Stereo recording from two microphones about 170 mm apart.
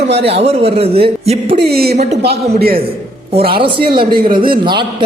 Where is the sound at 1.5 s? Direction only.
65° right (ahead or behind).